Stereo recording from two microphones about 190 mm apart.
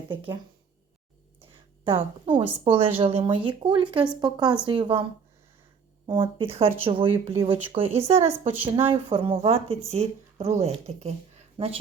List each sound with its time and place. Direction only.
0.1 s speech: 25° right (ahead or behind)
1.8 s speech: 30° right (ahead or behind)
6.1 s a woman's voice: 30° right (ahead or behind)